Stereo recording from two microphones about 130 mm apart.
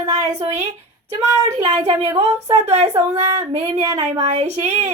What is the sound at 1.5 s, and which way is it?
A woman's voice, 60° right (ahead or behind).